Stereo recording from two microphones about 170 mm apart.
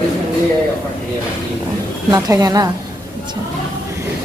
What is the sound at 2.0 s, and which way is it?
Speech, 20° right (ahead or behind).